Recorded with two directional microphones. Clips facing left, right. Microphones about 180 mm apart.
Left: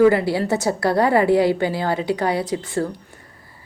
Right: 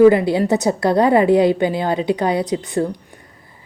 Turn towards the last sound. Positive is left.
turn(degrees=-20)  # may be behind; listen again after turning